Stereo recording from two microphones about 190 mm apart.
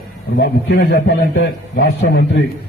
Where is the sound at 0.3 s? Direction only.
60° left (ahead or behind).